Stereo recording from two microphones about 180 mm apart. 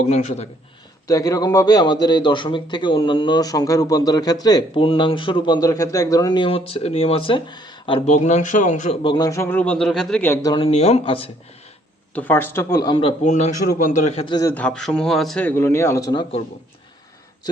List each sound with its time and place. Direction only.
0.1 s speech: 40° left (ahead or behind)
1.0 s a man's voice: 20° left (ahead or behind); by 9.0 s 40° left (ahead or behind)
9.0 s a man's voice: 20° left (ahead or behind)
10.5 s speech: 30° left (ahead or behind)
12.1 s a man's voice: 10° left (ahead or behind); by 14.3 s 35° left (ahead or behind)
14.5 s a man's voice: 5° left (ahead or behind)